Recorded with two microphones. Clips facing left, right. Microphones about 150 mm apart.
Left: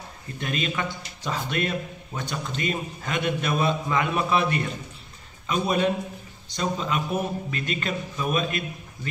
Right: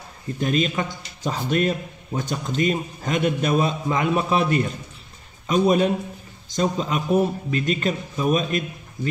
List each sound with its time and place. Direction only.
0.4 s speech: 40° right (ahead or behind)